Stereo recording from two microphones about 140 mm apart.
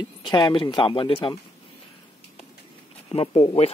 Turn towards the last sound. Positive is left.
turn(degrees=45)  # may be behind; listen again after turning